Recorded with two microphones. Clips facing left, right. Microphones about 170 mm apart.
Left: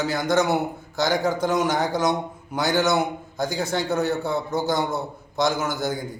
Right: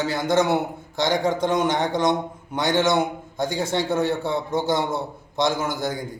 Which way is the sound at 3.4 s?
Centre (ahead or behind).